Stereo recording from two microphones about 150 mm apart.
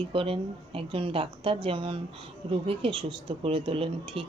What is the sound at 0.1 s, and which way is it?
Speech, 35° right (ahead or behind).